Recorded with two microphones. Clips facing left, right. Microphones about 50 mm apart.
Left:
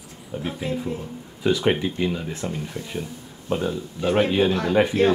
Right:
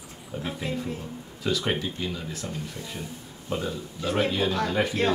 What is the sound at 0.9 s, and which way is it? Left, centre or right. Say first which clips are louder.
Speech: left 3 dB; left.